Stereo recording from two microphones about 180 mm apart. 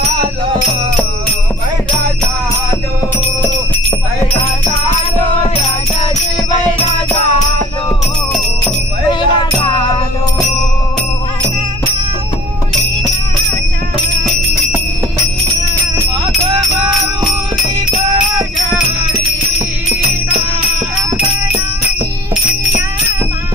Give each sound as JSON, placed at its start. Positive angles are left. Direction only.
{"t": 9.2, "sound": "music", "side_deg": 25}